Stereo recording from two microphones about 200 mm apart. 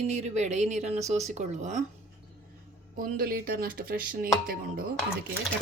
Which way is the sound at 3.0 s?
45° right (ahead or behind).